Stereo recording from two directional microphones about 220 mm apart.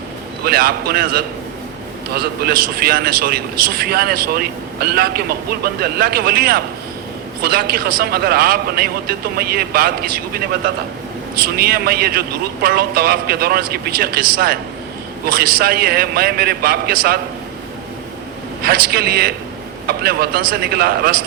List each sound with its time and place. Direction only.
0.4 s a man's voice: 45° right (ahead or behind)
18.6 s a man's voice: 45° right (ahead or behind)